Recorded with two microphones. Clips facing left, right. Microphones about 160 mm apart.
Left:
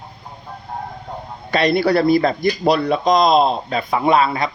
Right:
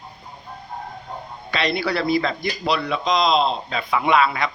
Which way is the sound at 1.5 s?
45° left (ahead or behind).